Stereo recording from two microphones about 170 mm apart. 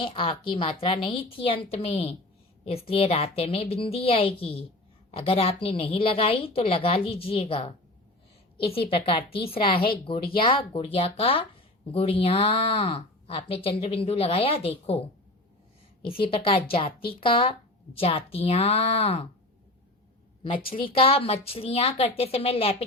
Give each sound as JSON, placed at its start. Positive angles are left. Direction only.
{"t": 0.0, "sound": "a woman's voice", "side_deg": 30}
{"t": 16.2, "sound": "speech", "side_deg": 30}
{"t": 20.8, "sound": "speech", "side_deg": 35}